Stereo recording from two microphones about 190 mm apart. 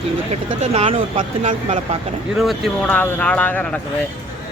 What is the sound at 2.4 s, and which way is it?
Speech, centre (ahead or behind).